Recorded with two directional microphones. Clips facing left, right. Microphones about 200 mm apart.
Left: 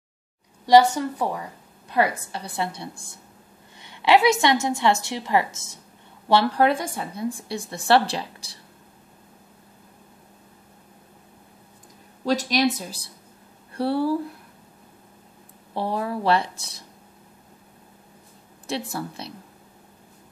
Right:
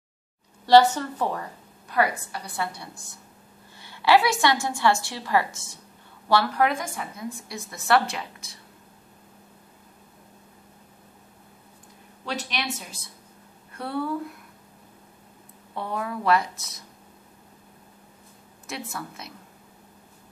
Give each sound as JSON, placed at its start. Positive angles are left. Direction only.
{"t": 0.7, "sound": "a woman's voice", "side_deg": 10}
{"t": 1.9, "sound": "a woman's voice", "side_deg": 25}
{"t": 12.3, "sound": "a woman's voice", "side_deg": 40}
{"t": 15.7, "sound": "a woman's voice", "side_deg": 30}
{"t": 18.7, "sound": "a woman's voice", "side_deg": 30}